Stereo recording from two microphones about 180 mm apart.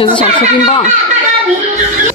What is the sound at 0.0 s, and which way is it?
Speech, 30° left (ahead or behind).